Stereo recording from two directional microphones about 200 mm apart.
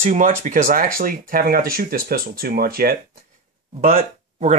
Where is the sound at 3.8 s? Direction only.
30° right (ahead or behind).